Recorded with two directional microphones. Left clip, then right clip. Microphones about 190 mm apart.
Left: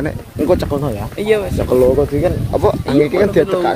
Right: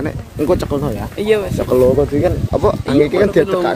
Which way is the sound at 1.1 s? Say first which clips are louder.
Even; 30° right (ahead or behind).